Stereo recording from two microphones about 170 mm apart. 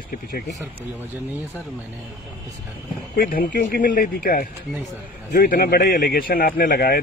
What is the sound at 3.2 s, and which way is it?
Speech, 55° left (ahead or behind).